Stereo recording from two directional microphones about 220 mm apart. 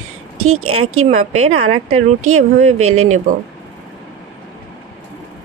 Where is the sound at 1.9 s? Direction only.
75° right (ahead or behind).